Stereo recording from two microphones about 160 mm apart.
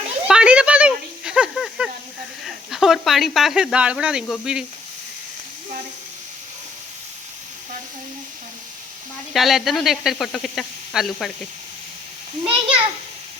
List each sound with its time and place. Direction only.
0.3 s a sound: 5° right (ahead or behind)
2.4 s speech: centre (ahead or behind)
9.3 s speech: centre (ahead or behind)
12.5 s a child's voice: 35° right (ahead or behind)